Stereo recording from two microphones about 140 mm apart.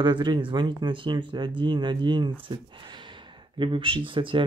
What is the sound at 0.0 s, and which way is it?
Speech, 35° right (ahead or behind).